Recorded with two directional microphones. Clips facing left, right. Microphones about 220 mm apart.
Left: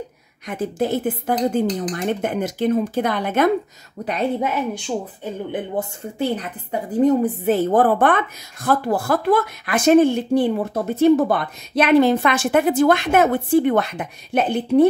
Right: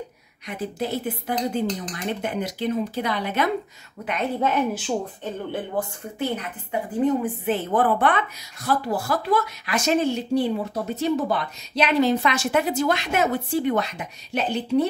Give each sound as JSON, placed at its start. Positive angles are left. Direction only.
{"t": 0.5, "sound": "a woman's voice", "side_deg": 50}
{"t": 4.0, "sound": "a woman's voice", "side_deg": 35}
{"t": 5.2, "sound": "speech", "side_deg": 15}
{"t": 6.1, "sound": "a woman's voice", "side_deg": 35}